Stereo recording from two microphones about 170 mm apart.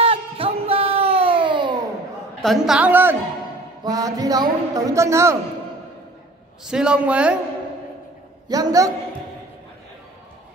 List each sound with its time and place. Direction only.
0.0 s a sound: 35° right (ahead or behind)
2.4 s a woman's voice: centre (ahead or behind)
3.8 s a man's voice: 20° right (ahead or behind)
6.7 s a man's voice: 5° right (ahead or behind)
8.5 s a man's voice: 25° right (ahead or behind)